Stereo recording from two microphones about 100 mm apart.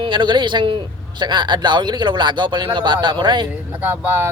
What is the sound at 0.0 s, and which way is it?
Speech, 50° right (ahead or behind).